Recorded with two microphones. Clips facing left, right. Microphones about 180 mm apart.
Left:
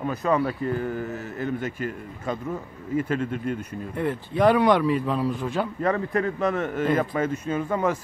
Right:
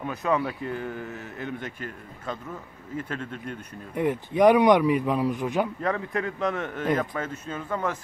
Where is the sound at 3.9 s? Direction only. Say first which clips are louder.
Right 2 dB; 15° right (ahead or behind).